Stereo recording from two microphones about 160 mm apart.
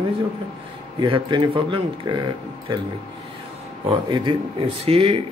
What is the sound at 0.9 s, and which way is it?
Speech, 30° right (ahead or behind).